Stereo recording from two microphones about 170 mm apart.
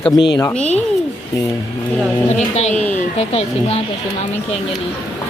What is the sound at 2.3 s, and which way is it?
A woman's voice, 40° left (ahead or behind).